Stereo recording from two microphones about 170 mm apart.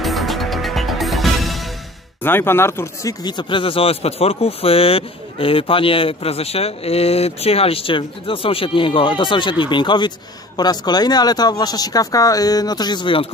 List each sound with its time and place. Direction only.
0.0 s music: centre (ahead or behind)
2.2 s speech: 15° left (ahead or behind); by 13.3 s 30° left (ahead or behind)